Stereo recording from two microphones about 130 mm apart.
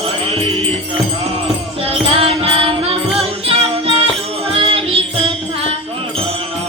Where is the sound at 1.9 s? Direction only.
45° right (ahead or behind).